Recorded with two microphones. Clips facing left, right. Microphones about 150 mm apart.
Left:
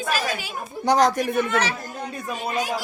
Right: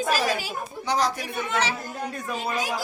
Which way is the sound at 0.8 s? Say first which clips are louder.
Left 7 dB; 50° left (ahead or behind).